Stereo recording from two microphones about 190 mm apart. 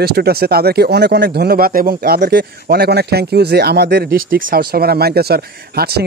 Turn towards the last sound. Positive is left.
turn(degrees=-55)  # may be behind; listen again after turning